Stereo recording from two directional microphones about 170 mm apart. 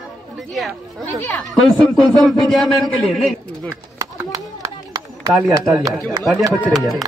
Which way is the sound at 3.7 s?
20° right (ahead or behind).